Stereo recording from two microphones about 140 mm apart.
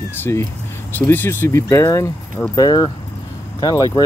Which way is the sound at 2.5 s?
30° left (ahead or behind).